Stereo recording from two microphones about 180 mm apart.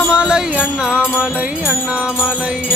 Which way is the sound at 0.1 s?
5° right (ahead or behind).